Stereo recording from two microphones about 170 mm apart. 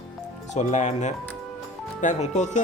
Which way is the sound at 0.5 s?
45° left (ahead or behind).